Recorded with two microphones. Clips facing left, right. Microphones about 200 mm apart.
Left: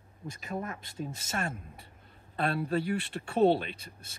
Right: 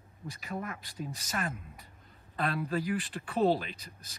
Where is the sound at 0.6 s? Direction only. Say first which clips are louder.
Left 2 dB; 25° left (ahead or behind).